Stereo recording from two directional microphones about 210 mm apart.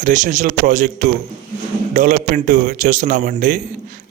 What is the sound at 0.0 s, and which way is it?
Speech, 35° right (ahead or behind).